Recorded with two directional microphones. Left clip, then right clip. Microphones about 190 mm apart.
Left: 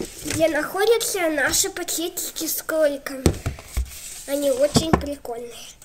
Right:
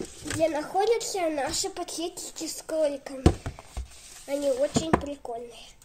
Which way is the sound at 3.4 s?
25° left (ahead or behind).